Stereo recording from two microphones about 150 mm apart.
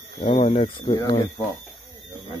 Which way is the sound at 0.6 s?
35° left (ahead or behind).